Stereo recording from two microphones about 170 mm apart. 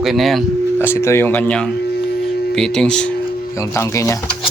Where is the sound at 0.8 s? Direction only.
15° left (ahead or behind).